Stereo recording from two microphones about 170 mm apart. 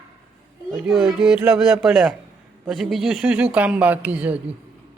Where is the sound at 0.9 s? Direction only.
Centre (ahead or behind).